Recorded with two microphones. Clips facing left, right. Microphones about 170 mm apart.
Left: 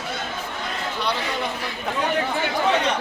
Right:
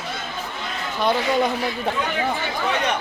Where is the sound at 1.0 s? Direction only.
45° right (ahead or behind).